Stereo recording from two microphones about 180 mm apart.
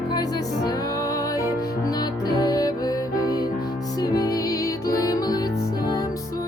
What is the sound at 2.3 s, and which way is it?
Music, 20° left (ahead or behind).